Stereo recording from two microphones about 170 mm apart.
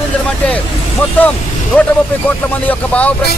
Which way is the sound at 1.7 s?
10° left (ahead or behind).